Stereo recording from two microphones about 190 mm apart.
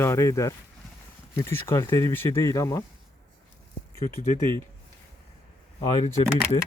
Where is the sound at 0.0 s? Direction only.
15° left (ahead or behind).